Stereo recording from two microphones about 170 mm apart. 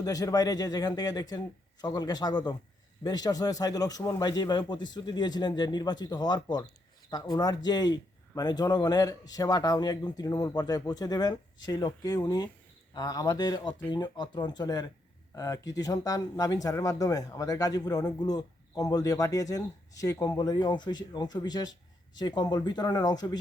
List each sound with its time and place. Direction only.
0.0 s speech: 20° left (ahead or behind)